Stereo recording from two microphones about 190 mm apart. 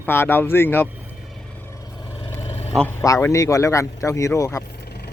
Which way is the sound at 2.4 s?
35° left (ahead or behind).